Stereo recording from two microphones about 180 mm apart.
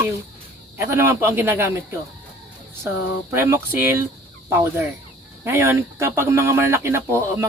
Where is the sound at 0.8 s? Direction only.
15° right (ahead or behind).